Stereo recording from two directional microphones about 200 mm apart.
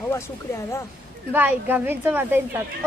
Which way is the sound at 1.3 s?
10° right (ahead or behind).